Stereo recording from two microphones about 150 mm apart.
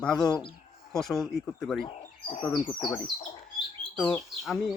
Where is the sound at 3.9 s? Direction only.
10° left (ahead or behind).